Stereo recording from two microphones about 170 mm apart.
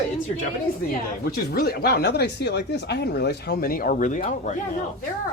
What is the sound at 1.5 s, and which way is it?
Speech, 70° left (ahead or behind).